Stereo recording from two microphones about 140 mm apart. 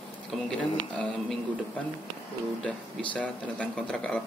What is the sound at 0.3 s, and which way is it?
Speech, 10° left (ahead or behind).